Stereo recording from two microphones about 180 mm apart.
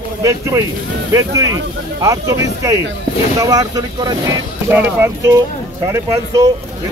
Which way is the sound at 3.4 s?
20° right (ahead or behind).